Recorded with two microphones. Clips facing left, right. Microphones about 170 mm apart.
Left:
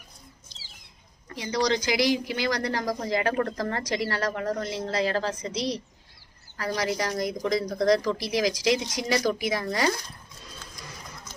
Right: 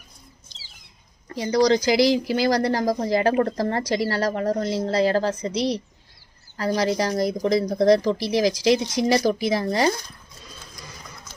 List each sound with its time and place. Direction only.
1.3 s speech: 40° right (ahead or behind)